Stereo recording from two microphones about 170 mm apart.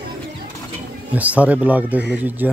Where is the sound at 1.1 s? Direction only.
10° right (ahead or behind).